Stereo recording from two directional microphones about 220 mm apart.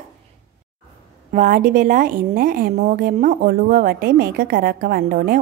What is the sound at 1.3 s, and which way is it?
A woman's voice, 35° right (ahead or behind).